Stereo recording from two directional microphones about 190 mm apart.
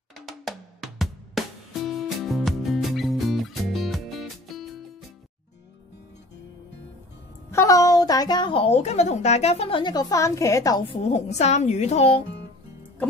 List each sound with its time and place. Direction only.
0.3 s music: centre (ahead or behind)
7.5 s a woman's voice: 15° left (ahead or behind)
11.1 s a woman's voice: 35° left (ahead or behind)